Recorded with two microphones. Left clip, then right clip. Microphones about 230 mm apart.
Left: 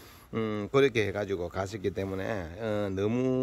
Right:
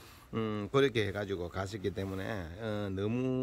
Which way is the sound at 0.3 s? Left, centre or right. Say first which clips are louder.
Left 4 dB; centre.